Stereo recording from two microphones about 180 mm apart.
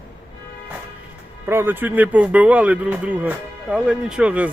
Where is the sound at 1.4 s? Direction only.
10° right (ahead or behind).